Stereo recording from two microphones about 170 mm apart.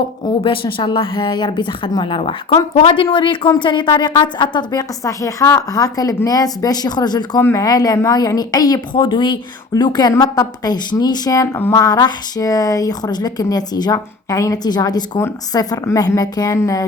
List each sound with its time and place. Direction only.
0.4 s speech: 30° left (ahead or behind)